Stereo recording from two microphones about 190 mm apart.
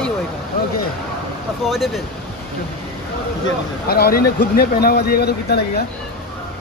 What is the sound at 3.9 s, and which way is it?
Speech, 55° left (ahead or behind).